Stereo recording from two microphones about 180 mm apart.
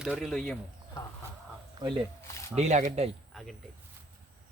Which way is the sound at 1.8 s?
20° right (ahead or behind).